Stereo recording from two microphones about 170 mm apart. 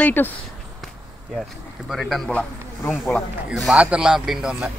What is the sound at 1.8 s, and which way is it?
Speech, centre (ahead or behind).